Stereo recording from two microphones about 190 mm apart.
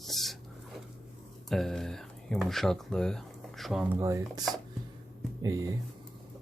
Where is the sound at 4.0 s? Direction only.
15° right (ahead or behind).